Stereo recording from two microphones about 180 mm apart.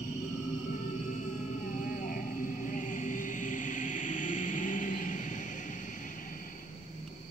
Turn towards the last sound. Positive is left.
turn(degrees=45)  # may be behind; listen again after turning